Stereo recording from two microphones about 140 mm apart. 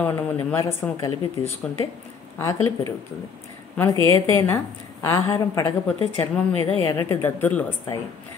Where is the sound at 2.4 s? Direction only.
25° left (ahead or behind).